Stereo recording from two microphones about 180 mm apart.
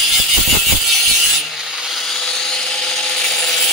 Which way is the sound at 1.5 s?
5° right (ahead or behind).